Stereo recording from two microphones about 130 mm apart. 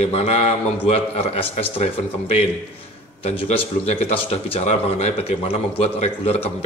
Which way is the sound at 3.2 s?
50° left (ahead or behind).